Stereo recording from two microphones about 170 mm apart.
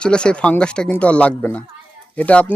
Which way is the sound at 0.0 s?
5° left (ahead or behind).